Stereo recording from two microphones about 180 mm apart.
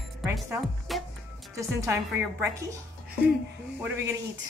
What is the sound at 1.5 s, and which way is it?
Speech, 15° right (ahead or behind).